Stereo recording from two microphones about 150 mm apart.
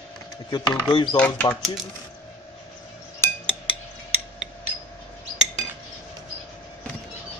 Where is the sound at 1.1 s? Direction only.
10° left (ahead or behind).